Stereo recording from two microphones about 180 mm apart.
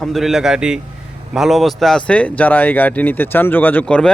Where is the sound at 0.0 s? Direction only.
Centre (ahead or behind).